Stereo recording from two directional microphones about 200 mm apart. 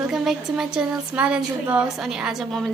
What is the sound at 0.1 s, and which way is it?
A woman's voice, 5° right (ahead or behind).